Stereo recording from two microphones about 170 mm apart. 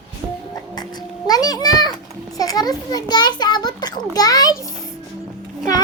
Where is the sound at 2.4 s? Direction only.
20° left (ahead or behind).